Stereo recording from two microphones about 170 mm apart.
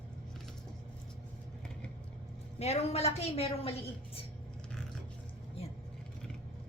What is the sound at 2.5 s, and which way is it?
A woman's voice, 40° left (ahead or behind).